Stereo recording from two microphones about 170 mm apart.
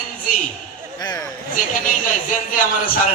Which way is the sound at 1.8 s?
50° left (ahead or behind).